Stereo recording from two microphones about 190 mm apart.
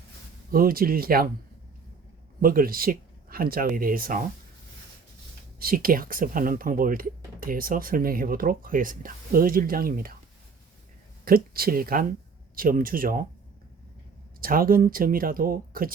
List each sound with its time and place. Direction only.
0.5 s speech: 50° right (ahead or behind)
2.4 s speech: 50° right (ahead or behind)
5.5 s speech: 50° right (ahead or behind)
11.3 s speech: 50° right (ahead or behind)
14.4 s speech: 50° right (ahead or behind)